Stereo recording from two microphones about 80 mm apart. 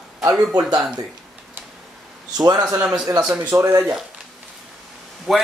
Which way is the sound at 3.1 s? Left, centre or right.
Right.